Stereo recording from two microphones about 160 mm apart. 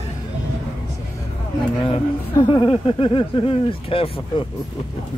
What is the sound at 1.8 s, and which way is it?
Speech, 30° left (ahead or behind).